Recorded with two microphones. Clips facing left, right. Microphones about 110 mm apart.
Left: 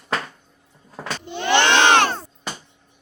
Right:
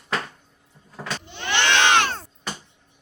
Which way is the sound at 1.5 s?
35° left (ahead or behind).